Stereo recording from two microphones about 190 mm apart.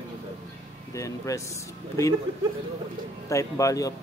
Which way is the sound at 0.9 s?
15° left (ahead or behind).